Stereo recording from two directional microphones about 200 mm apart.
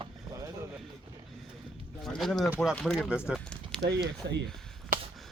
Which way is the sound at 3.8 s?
60° right (ahead or behind).